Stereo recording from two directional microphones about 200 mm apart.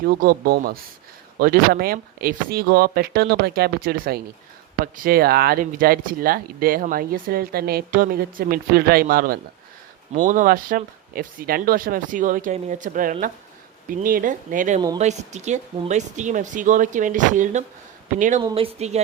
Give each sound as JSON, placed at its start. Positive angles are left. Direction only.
{"t": 0.2, "sound": "speech", "side_deg": -50}